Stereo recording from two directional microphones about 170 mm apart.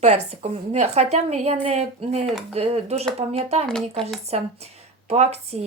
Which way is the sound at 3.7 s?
5° left (ahead or behind).